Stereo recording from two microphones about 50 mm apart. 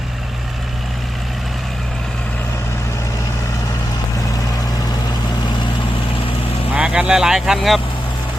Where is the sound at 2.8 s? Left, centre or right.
Left.